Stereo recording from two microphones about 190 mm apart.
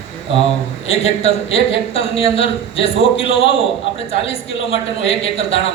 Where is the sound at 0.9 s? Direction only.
35° left (ahead or behind).